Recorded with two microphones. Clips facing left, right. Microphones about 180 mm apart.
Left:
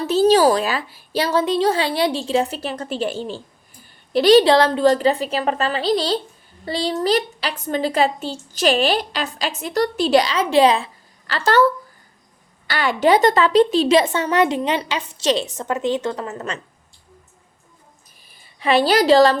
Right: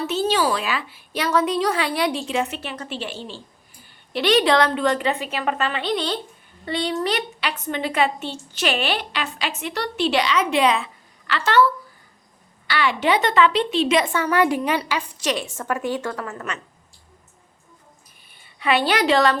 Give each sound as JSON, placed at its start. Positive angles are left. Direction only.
{"t": 0.0, "sound": "a woman's voice", "side_deg": 40}
{"t": 18.3, "sound": "a woman's voice", "side_deg": 35}